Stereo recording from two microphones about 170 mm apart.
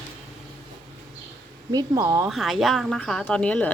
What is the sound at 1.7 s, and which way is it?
Speech, 20° right (ahead or behind).